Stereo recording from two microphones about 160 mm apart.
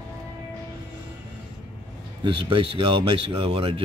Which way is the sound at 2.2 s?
35° right (ahead or behind).